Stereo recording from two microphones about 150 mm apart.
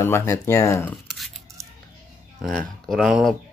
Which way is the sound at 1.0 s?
Centre (ahead or behind).